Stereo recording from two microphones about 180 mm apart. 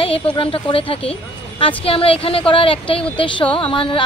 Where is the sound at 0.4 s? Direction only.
30° left (ahead or behind).